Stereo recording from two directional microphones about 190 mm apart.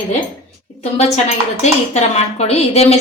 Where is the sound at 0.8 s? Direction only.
35° left (ahead or behind).